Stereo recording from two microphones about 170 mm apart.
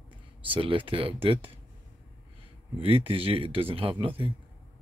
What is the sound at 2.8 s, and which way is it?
Speech, 30° right (ahead or behind).